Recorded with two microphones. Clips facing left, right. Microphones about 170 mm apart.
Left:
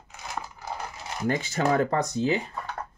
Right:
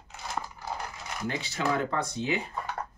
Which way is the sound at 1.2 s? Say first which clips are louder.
Left 5 dB; 45° left (ahead or behind).